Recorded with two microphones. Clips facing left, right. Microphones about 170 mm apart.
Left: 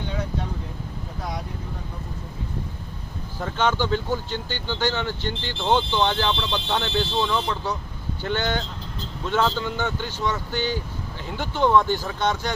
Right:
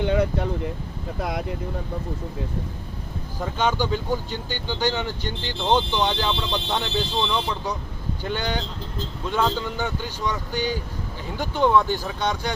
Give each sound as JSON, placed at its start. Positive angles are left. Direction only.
{"t": 0.0, "sound": "speech", "side_deg": -65}
{"t": 3.4, "sound": "speech", "side_deg": -10}